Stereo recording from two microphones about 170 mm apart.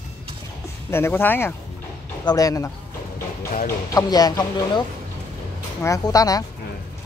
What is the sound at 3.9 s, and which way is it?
Speech, 20° left (ahead or behind).